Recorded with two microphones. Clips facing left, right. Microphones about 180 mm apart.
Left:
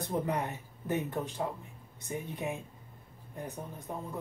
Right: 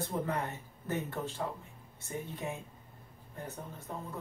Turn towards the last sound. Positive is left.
turn(degrees=15)  # may be behind; listen again after turning